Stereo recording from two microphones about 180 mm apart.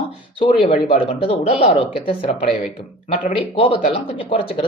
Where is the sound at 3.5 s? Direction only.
30° left (ahead or behind).